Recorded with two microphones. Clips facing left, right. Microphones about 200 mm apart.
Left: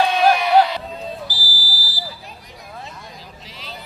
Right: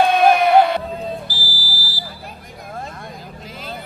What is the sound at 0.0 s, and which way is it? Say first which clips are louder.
Music: right 3 dB; 55° right (ahead or behind).